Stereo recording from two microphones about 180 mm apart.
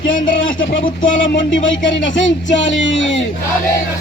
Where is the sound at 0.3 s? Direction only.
90° left.